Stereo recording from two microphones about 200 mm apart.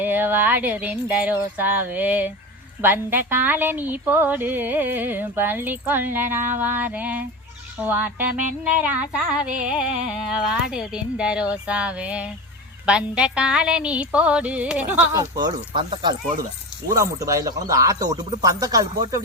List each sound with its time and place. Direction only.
0.0 s speech: 10° right (ahead or behind)